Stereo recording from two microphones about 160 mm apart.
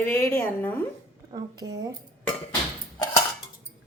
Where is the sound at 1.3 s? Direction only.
25° right (ahead or behind).